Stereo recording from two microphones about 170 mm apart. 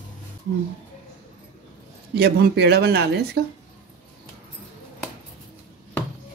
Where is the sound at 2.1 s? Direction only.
70° right (ahead or behind).